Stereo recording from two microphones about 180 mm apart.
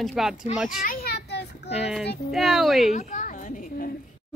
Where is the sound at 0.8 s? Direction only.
60° left (ahead or behind).